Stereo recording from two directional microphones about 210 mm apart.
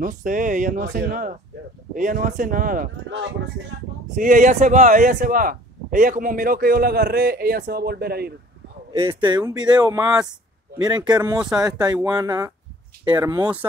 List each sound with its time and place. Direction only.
0.0 s speech: 40° right (ahead or behind)
9.0 s speech: 20° right (ahead or behind)